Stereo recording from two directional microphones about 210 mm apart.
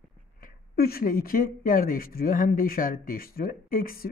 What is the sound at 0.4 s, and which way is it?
Speech, 45° left (ahead or behind).